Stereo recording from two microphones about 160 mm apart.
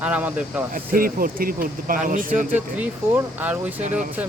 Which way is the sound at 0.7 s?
60° right (ahead or behind).